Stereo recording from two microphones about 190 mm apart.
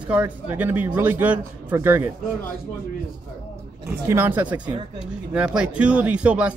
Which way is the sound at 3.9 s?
10° right (ahead or behind).